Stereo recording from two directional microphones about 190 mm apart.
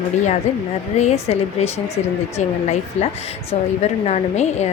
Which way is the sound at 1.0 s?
35° left (ahead or behind).